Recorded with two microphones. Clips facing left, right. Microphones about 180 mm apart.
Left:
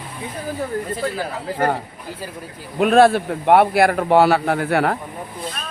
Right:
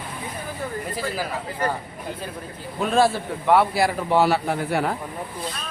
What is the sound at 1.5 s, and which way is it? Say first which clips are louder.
Speech: left 7 dB; 60° left (ahead or behind).